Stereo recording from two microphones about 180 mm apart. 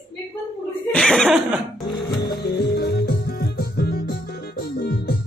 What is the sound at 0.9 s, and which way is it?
Chuckle, 5° left (ahead or behind).